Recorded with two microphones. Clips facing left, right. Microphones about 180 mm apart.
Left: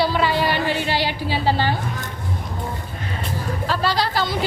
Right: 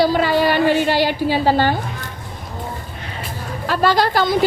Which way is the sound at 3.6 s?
55° right (ahead or behind).